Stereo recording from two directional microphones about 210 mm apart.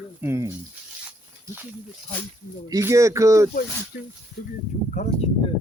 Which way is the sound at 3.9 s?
45° left (ahead or behind).